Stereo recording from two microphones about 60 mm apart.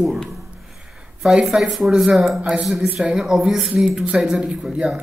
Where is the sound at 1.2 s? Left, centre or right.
Centre.